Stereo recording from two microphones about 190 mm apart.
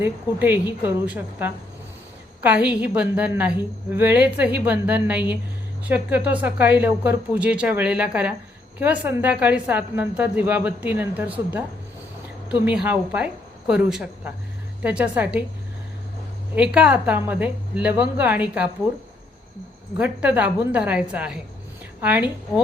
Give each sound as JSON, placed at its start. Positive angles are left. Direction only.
{"t": 0.0, "sound": "a woman's voice", "side_deg": -10}
{"t": 16.6, "sound": "a woman's voice", "side_deg": -5}
{"t": 20.0, "sound": "a woman's voice", "side_deg": -10}